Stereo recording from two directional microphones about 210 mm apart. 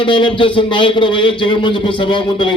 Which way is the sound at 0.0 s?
25° left (ahead or behind).